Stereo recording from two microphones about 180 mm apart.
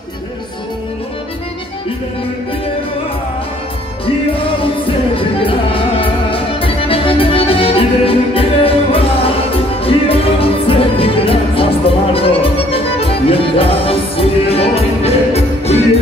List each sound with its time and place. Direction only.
4.6 s music: 30° left (ahead or behind)